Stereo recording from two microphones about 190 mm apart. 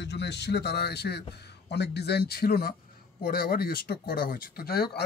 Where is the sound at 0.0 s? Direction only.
65° left (ahead or behind).